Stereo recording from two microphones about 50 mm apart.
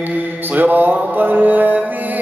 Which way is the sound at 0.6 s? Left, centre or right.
Right.